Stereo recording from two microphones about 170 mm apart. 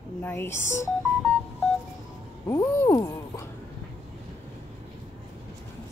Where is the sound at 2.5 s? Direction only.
15° left (ahead or behind).